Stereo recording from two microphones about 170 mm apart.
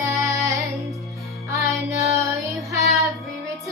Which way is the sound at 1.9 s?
20° right (ahead or behind).